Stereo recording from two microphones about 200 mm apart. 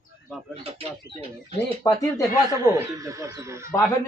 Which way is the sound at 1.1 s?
55° right (ahead or behind).